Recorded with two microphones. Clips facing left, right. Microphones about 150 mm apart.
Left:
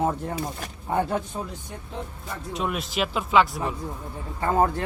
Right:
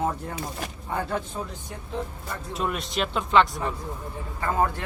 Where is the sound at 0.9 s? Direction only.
25° left (ahead or behind).